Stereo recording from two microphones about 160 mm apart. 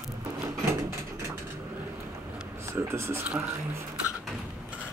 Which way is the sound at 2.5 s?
15° right (ahead or behind).